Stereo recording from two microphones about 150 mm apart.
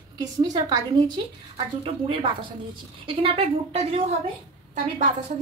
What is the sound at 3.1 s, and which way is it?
Speech, 40° right (ahead or behind).